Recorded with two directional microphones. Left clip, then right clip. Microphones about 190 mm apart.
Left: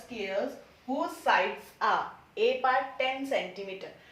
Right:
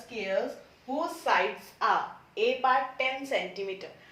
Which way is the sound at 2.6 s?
15° right (ahead or behind).